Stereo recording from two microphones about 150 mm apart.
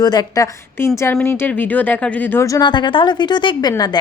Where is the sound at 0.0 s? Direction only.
25° left (ahead or behind).